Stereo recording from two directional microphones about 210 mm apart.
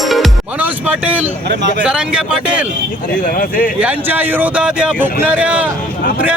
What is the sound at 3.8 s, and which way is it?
Speech, 10° right (ahead or behind).